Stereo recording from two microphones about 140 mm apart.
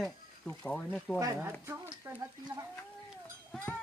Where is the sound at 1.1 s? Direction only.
25° right (ahead or behind).